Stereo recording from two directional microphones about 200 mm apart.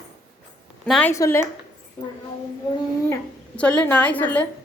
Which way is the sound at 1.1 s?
15° left (ahead or behind).